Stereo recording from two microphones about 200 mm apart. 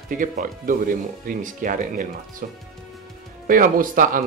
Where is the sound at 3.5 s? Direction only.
45° right (ahead or behind).